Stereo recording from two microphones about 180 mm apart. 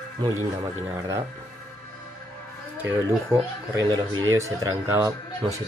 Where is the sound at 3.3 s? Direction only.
20° right (ahead or behind).